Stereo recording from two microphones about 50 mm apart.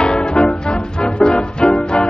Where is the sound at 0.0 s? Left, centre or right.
Centre.